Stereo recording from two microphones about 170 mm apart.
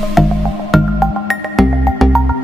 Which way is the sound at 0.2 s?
Centre (ahead or behind).